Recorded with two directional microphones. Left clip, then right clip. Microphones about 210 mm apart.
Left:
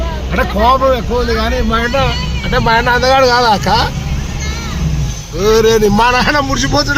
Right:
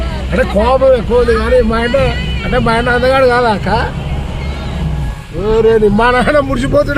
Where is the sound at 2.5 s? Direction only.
25° left (ahead or behind); by 3.8 s 45° left (ahead or behind).